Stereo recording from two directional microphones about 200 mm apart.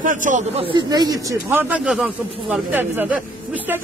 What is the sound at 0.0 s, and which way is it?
Speech, 40° right (ahead or behind).